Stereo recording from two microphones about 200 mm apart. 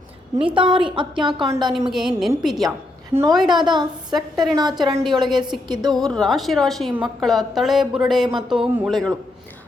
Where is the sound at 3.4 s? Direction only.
20° right (ahead or behind).